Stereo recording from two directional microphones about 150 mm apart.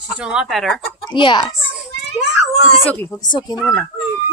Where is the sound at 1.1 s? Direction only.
35° left (ahead or behind).